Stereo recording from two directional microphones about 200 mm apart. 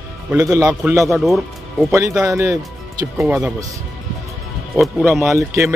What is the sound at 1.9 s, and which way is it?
Speech, 15° right (ahead or behind).